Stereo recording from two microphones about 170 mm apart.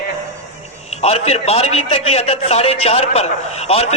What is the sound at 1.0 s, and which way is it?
A man's voice, 40° left (ahead or behind).